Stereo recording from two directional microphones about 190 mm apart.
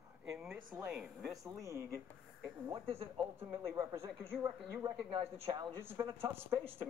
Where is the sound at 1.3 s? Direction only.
15° right (ahead or behind).